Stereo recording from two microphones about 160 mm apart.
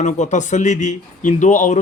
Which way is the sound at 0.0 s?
50° left (ahead or behind).